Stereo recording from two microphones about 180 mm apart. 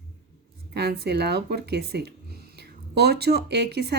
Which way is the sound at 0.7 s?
65° right (ahead or behind).